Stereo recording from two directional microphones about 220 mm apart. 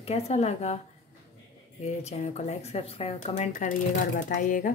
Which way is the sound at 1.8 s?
30° left (ahead or behind).